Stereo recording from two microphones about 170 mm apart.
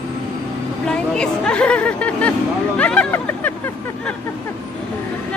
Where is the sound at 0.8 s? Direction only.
5° left (ahead or behind).